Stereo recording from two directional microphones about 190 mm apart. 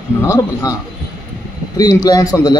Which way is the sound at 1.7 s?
20° left (ahead or behind).